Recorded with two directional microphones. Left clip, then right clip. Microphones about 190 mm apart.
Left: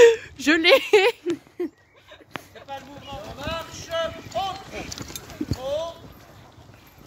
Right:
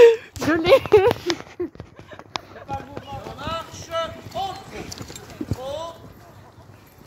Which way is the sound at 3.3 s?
30° left (ahead or behind).